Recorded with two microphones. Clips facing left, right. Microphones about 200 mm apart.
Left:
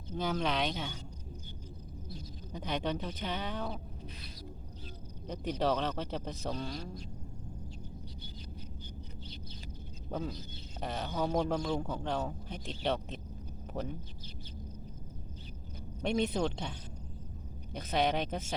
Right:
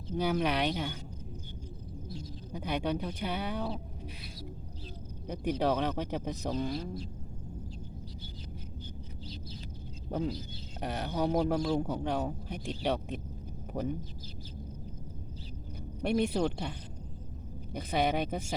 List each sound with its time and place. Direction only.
0.2 s speech: 10° right (ahead or behind)
2.5 s speech: 10° right (ahead or behind)
5.3 s speech: 10° right (ahead or behind)
10.1 s speech: 10° right (ahead or behind)
16.0 s speech: 10° right (ahead or behind)
17.7 s speech: 10° right (ahead or behind)